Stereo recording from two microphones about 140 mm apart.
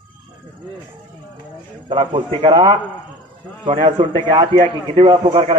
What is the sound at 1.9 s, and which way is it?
A man's voice, 35° right (ahead or behind).